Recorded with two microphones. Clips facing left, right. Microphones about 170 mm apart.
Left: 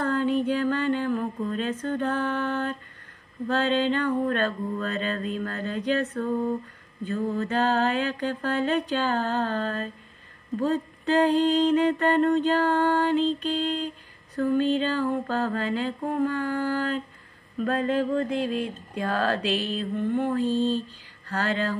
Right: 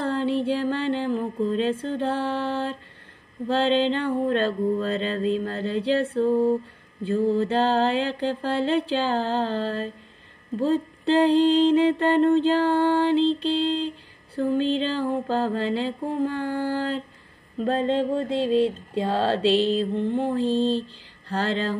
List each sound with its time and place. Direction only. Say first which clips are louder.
0.0 s music: even; 30° right (ahead or behind)
2.0 s mantra: right 1 dB; 30° right (ahead or behind)
20.4 s a sound: right 2 dB; 10° left (ahead or behind)